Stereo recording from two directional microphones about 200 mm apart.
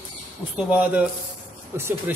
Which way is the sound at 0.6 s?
5° right (ahead or behind).